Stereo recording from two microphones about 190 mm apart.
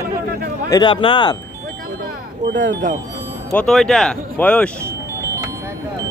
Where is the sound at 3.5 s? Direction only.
5° left (ahead or behind).